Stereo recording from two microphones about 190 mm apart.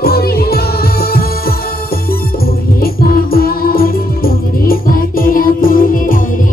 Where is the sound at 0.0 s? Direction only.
55° left (ahead or behind).